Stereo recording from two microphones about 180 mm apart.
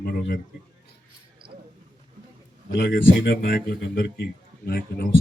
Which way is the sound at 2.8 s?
65° left (ahead or behind).